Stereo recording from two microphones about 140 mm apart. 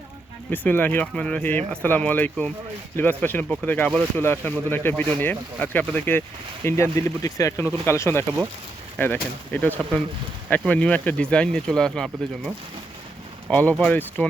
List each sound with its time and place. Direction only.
0.5 s speech: 15° left (ahead or behind)
13.5 s speech: 10° left (ahead or behind)